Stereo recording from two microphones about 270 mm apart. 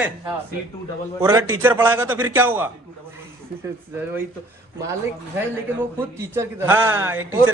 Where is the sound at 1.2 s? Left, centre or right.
Centre.